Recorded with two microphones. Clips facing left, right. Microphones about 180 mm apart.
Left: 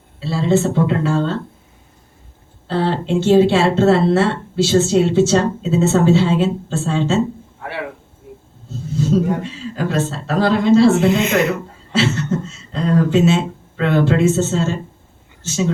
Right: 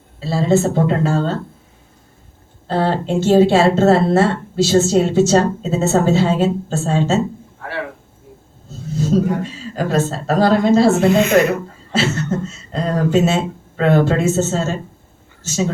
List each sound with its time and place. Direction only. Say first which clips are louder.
0.2 s speech: right 1 dB; 45° right (ahead or behind)
2.6 s speech: right 1 dB; 45° right (ahead or behind)
9.0 s speech: even; 45° right (ahead or behind)
11.0 s speech: right 3 dB; 20° left (ahead or behind)
11.9 s speech: left 1 dB; 45° right (ahead or behind)